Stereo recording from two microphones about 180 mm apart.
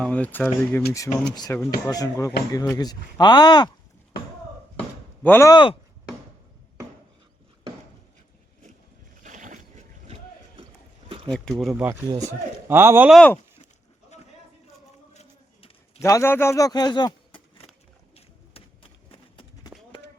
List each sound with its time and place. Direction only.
0.0 s speech: 10° left (ahead or behind)
1.1 s speech: 40° left (ahead or behind)
1.5 s speech: 15° left (ahead or behind)
4.8 s a sound: 10° left (ahead or behind)
5.5 s chopping: 25° left (ahead or behind)
9.2 s boat: 45° right (ahead or behind)
11.3 s speech: centre (ahead or behind)
11.7 s a man's voice: 10° right (ahead or behind)
13.1 s speech: centre (ahead or behind)
15.1 s a sound: 40° left (ahead or behind)
16.0 s speech: 15° left (ahead or behind)
18.1 s horse: 30° left (ahead or behind)